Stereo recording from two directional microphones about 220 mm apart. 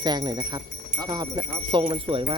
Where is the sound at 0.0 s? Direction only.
20° right (ahead or behind).